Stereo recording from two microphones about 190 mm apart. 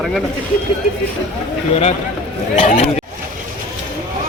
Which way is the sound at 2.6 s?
30° left (ahead or behind).